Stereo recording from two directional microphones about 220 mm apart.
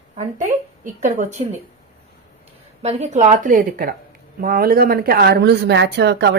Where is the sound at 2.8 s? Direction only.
30° right (ahead or behind); by 6.3 s 50° right (ahead or behind).